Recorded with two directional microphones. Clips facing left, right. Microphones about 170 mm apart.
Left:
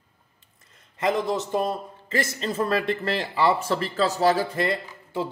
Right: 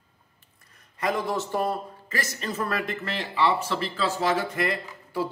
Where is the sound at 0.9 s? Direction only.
20° left (ahead or behind).